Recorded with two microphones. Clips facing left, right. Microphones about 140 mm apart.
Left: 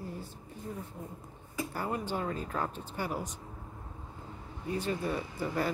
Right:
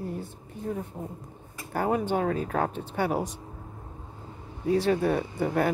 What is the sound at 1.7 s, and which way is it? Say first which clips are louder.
Speech: right 10 dB; 65° right (ahead or behind).